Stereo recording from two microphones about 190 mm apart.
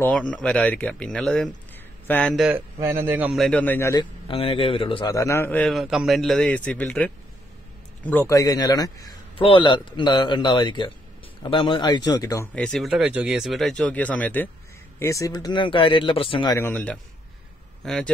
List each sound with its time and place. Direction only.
0.0 s speech: 5° left (ahead or behind)
2.8 s a man's voice: 15° right (ahead or behind); by 12.4 s 20° left (ahead or behind)
12.5 s a man's voice: centre (ahead or behind); by 16.5 s 30° left (ahead or behind)
16.5 s a man's voice: 10° left (ahead or behind)